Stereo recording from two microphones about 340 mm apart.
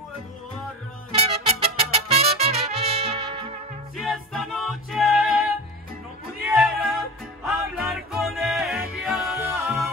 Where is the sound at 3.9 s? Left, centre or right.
Centre.